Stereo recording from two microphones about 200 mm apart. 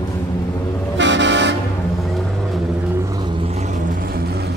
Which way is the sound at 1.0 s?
65° right (ahead or behind).